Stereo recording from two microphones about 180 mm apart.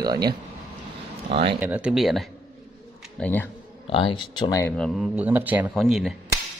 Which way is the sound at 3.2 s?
10° left (ahead or behind).